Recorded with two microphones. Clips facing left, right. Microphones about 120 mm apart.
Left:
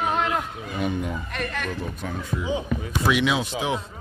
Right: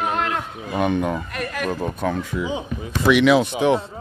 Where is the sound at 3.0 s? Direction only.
65° right (ahead or behind).